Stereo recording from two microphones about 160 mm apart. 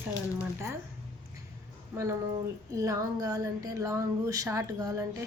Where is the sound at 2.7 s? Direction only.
20° right (ahead or behind).